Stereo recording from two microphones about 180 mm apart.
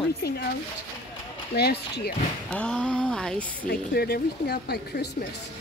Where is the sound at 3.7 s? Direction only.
60° left (ahead or behind).